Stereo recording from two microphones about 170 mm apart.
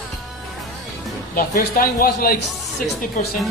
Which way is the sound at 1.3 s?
60° left (ahead or behind).